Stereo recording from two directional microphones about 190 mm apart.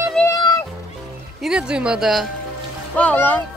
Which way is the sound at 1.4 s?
5° right (ahead or behind).